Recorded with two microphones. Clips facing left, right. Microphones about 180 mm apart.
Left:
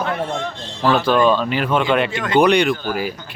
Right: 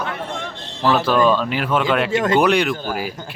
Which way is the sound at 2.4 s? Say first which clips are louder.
Left 6 dB; centre (ahead or behind).